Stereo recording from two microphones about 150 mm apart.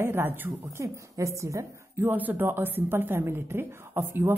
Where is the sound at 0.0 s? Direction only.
15° right (ahead or behind).